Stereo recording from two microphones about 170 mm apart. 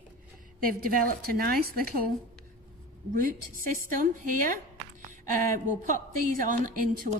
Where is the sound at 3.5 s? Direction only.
55° right (ahead or behind).